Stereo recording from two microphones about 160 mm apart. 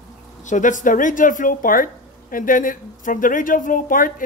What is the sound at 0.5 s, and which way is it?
Speech, 55° left (ahead or behind).